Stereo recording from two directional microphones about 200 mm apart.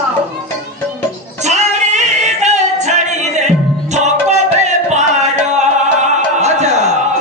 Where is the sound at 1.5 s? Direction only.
35° right (ahead or behind).